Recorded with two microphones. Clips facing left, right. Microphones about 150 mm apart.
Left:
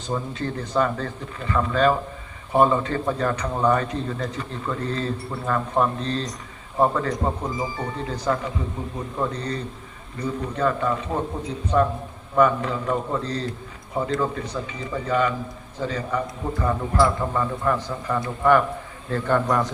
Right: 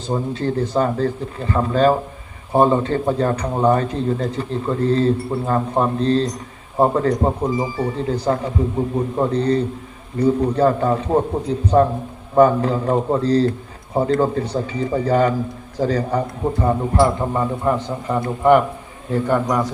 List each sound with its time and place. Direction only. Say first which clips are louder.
0.1 s a man's voice: right 6 dB; 35° right (ahead or behind); by 19.7 s 10° right (ahead or behind)